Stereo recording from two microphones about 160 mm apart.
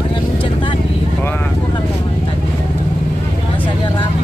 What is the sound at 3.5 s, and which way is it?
Vehicle, 30° left (ahead or behind).